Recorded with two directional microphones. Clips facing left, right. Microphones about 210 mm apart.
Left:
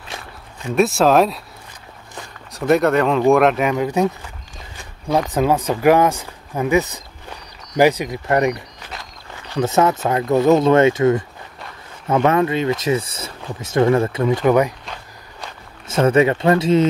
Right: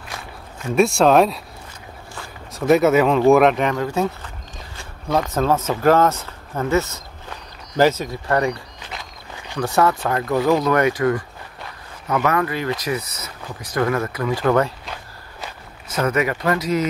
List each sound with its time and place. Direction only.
0.7 s speech: centre (ahead or behind)
2.5 s speech: centre (ahead or behind)
3.7 s speech: 15° left (ahead or behind)
5.3 s speech: 15° left (ahead or behind)
14.4 s speech: 15° left (ahead or behind)
15.9 s speech: 25° left (ahead or behind)